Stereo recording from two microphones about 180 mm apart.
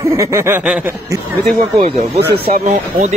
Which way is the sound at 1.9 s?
40° right (ahead or behind).